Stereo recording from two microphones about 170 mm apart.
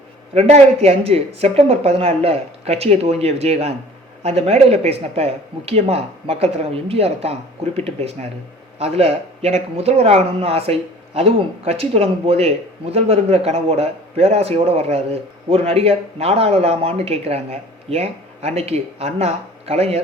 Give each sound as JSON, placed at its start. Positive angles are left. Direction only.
{"t": 0.3, "sound": "speech", "side_deg": -40}